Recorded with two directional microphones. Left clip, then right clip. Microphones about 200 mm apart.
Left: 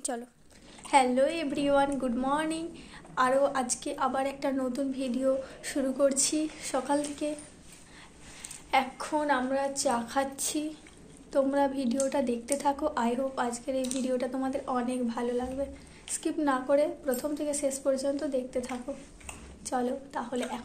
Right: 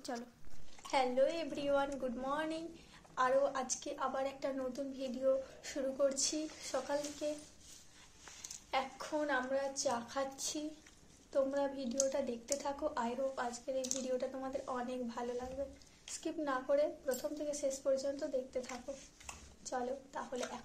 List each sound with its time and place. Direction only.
0.1 s a woman's voice: 30° left (ahead or behind)
0.9 s a woman's voice: 5° right (ahead or behind)
8.6 s a woman's voice: centre (ahead or behind)